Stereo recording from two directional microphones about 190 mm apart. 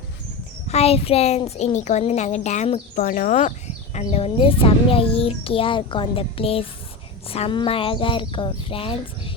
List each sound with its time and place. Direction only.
0.7 s a woman's voice: 30° left (ahead or behind)
3.0 s a child's voice: 45° left (ahead or behind); by 9.3 s 30° left (ahead or behind)